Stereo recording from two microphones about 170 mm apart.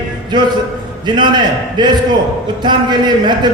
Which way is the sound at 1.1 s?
25° right (ahead or behind).